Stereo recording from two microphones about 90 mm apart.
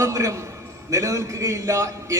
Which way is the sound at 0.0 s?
35° right (ahead or behind).